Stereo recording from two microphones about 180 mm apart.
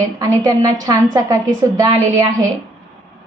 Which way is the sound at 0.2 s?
20° right (ahead or behind).